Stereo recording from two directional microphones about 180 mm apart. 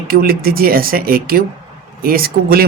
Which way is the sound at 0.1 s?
55° right (ahead or behind).